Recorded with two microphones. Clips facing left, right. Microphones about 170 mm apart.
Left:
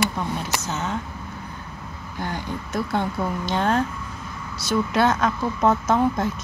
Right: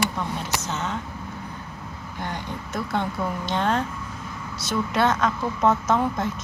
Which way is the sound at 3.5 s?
5° left (ahead or behind).